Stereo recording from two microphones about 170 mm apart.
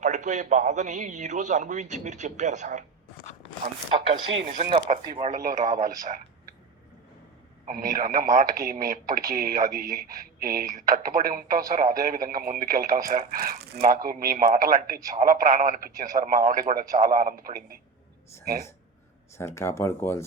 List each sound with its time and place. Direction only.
0.0 s a man's voice: 45° right (ahead or behind)
4.1 s a man's voice: 50° right (ahead or behind)
5.0 s speech: 30° right (ahead or behind)
5.3 s a man's voice: 50° right (ahead or behind)
7.6 s a man's voice: 50° right (ahead or behind)
19.4 s speech: 15° left (ahead or behind)